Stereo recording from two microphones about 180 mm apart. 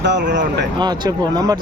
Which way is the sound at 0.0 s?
75° right (ahead or behind).